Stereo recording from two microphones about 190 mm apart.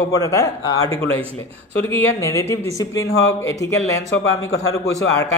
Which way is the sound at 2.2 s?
15° left (ahead or behind).